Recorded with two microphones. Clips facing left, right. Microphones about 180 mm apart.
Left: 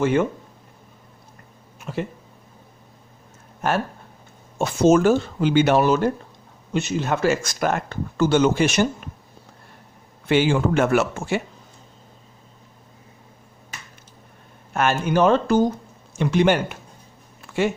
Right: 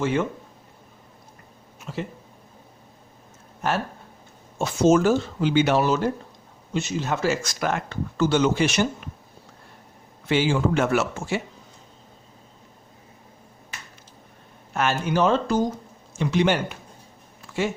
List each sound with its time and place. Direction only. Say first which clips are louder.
0.0 s speech: left 4 dB; 50° left (ahead or behind)
3.6 s speech: left 3 dB; 50° left (ahead or behind)
10.2 s speech: left 3 dB; 60° left (ahead or behind)
14.7 s speech: left 3 dB; 50° left (ahead or behind)